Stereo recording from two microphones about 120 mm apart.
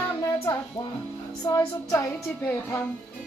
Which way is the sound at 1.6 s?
15° left (ahead or behind).